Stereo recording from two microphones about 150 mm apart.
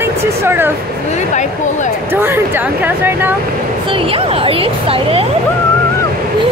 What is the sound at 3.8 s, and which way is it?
Speech, 35° right (ahead or behind).